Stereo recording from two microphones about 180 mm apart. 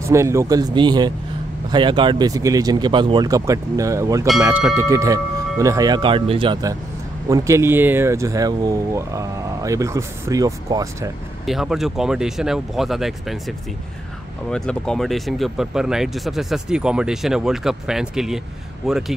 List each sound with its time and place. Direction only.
0.1 s speech: 15° right (ahead or behind)
11.4 s speech: centre (ahead or behind)